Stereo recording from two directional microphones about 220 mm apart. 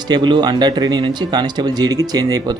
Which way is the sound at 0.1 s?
20° right (ahead or behind).